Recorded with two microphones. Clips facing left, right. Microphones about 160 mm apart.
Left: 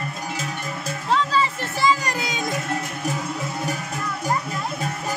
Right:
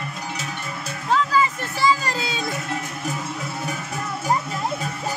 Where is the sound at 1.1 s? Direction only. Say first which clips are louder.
Right 1 dB; 30° left (ahead or behind).